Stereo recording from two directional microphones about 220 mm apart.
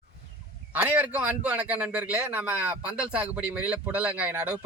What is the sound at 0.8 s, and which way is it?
A man's voice, 5° right (ahead or behind).